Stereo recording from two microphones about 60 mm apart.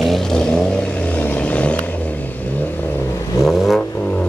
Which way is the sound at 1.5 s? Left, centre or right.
Left.